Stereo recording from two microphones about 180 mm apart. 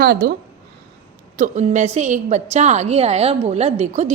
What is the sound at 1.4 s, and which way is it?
A woman's voice, 40° right (ahead or behind).